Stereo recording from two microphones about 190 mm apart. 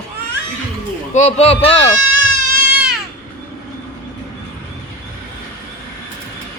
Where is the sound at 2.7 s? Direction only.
5° right (ahead or behind).